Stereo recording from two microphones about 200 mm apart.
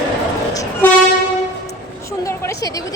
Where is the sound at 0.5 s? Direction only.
15° left (ahead or behind).